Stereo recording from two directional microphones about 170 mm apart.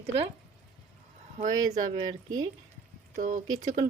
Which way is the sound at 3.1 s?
45° right (ahead or behind).